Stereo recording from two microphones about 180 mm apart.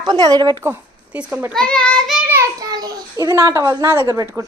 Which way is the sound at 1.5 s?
5° left (ahead or behind).